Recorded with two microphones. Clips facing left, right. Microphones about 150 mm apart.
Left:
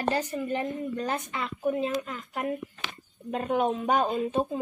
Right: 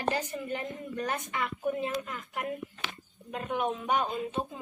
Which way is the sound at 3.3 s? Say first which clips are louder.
Left 5 dB; 35° left (ahead or behind).